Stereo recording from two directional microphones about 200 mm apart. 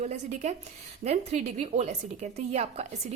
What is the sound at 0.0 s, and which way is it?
A woman's voice, 35° right (ahead or behind).